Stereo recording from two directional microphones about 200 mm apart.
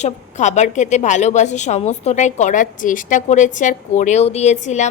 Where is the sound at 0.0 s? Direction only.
35° left (ahead or behind).